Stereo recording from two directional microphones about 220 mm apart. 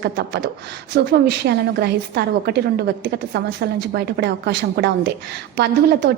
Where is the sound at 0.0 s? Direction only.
50° right (ahead or behind).